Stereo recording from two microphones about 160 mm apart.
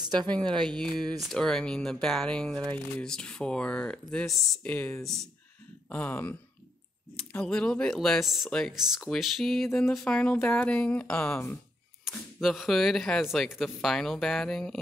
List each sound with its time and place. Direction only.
0.0 s a sound: 25° right (ahead or behind)
0.6 s speech: 5° left (ahead or behind)
12.4 s speech: centre (ahead or behind)